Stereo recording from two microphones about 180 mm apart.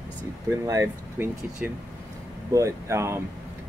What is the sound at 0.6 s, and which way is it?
Speech, 15° right (ahead or behind).